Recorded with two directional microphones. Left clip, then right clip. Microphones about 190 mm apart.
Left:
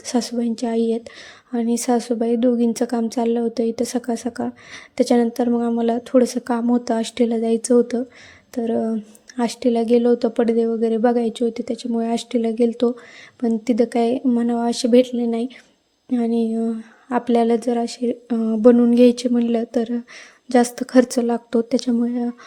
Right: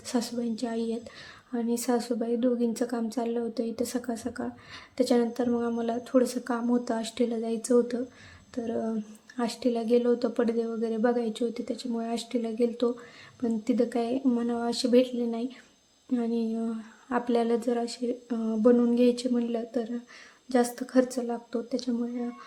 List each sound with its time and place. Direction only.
0.0 s a woman's voice: 30° left (ahead or behind)